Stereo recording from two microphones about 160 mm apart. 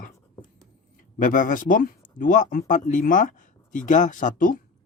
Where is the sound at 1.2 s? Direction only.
55° left (ahead or behind).